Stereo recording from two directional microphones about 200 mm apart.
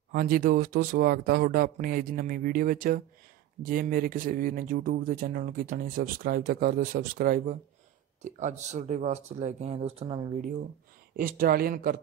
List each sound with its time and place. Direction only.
0.1 s speech: 45° right (ahead or behind); by 10.4 s 25° right (ahead or behind)
11.1 s speech: 45° right (ahead or behind)